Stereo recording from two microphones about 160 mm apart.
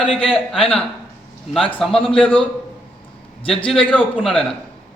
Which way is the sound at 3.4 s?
35° left (ahead or behind).